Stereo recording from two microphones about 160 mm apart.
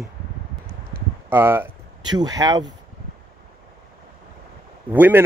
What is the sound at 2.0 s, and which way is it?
Speech, 25° right (ahead or behind).